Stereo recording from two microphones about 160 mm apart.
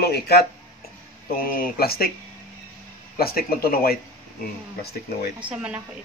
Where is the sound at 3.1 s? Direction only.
70° left (ahead or behind).